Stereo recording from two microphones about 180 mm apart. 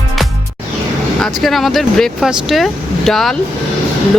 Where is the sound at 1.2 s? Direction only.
Centre (ahead or behind).